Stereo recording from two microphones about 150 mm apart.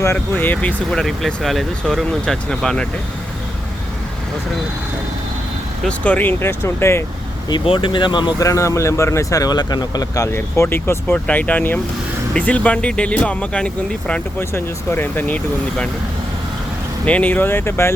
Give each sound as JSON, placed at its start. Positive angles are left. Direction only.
{"t": 0.0, "sound": "speech", "side_deg": 15}
{"t": 5.8, "sound": "speech", "side_deg": 10}
{"t": 7.5, "sound": "speech", "side_deg": 35}
{"t": 17.1, "sound": "speech", "side_deg": 10}